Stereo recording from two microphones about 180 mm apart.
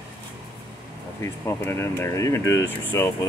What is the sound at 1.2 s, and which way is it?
Speech, 15° left (ahead or behind).